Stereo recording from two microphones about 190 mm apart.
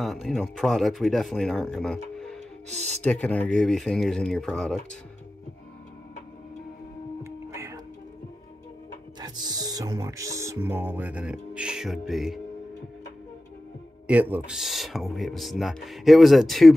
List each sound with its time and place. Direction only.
0.0 s speech: centre (ahead or behind)
7.2 s music: 15° right (ahead or behind)
9.2 s speech: 20° right (ahead or behind); by 12.4 s centre (ahead or behind)
14.3 s speech: 5° right (ahead or behind)